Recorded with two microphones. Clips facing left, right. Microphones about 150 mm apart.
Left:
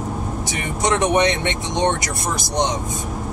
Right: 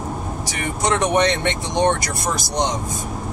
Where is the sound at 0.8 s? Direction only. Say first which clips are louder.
Left 1 dB; 20° left (ahead or behind).